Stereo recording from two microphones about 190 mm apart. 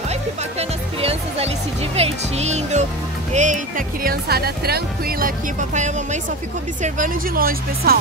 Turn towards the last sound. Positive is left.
turn(degrees=-50)  # may be behind; listen again after turning